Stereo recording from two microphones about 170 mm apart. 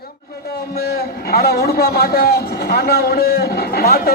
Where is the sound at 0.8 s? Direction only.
65° left (ahead or behind).